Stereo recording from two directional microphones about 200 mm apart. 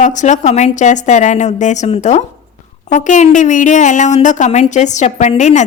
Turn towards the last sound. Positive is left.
turn(degrees=35)  # may be behind; listen again after turning